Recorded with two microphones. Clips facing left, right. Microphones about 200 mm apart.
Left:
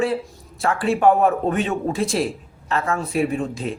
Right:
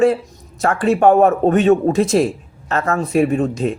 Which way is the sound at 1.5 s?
45° right (ahead or behind).